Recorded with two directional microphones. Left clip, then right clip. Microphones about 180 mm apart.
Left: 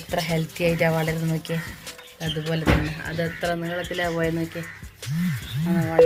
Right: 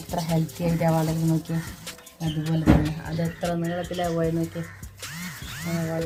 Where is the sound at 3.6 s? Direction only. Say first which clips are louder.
Left 1 dB; 15° left (ahead or behind).